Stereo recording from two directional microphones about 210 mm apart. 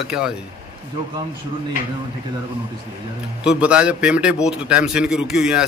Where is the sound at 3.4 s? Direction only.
5° right (ahead or behind).